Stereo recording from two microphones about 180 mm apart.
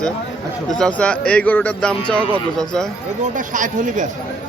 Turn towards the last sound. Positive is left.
turn(degrees=-45)  # may be behind; listen again after turning